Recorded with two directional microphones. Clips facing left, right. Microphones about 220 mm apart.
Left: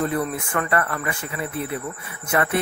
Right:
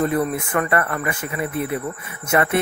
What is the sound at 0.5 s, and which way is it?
Speech, 20° right (ahead or behind).